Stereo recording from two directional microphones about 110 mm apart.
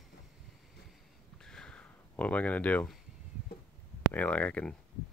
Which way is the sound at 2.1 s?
15° left (ahead or behind).